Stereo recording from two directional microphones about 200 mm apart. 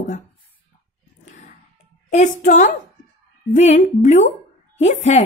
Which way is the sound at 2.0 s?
35° left (ahead or behind).